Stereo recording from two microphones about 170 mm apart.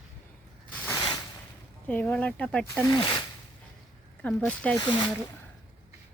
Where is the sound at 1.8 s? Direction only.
10° left (ahead or behind).